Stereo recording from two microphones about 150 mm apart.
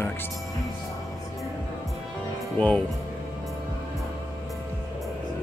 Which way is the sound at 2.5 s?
10° left (ahead or behind).